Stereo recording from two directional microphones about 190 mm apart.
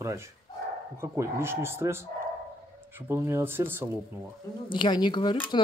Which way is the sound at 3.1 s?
15° right (ahead or behind).